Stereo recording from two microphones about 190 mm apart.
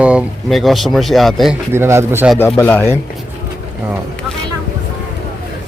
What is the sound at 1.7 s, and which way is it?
Speech, 15° right (ahead or behind).